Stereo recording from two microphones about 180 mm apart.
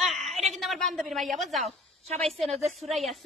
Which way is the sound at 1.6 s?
35° right (ahead or behind).